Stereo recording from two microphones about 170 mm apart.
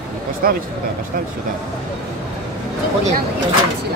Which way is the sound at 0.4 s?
60° right (ahead or behind).